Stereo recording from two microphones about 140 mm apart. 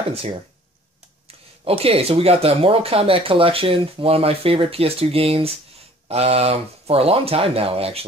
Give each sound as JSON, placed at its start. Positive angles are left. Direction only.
{"t": 1.6, "sound": "speech", "side_deg": -45}